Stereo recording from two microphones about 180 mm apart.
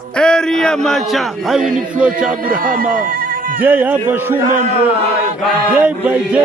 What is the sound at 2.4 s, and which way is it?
Speech, 50° right (ahead or behind).